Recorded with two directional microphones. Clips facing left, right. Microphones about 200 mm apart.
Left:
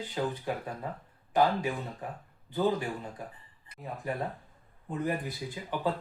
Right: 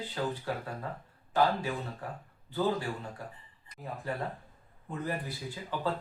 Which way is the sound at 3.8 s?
Centre (ahead or behind).